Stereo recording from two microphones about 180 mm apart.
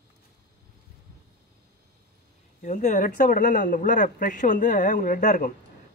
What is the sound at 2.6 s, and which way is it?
Speech, 45° left (ahead or behind).